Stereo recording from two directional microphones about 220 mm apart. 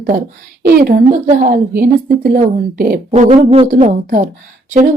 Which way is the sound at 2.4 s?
45° right (ahead or behind).